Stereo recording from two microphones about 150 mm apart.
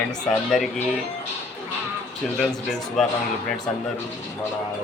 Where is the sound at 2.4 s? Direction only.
5° left (ahead or behind).